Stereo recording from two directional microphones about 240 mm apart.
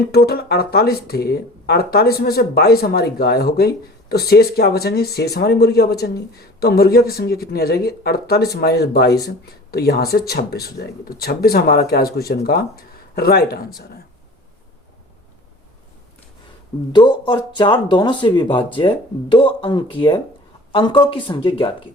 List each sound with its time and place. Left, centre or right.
0.1 s speech: left
16.9 s speech: centre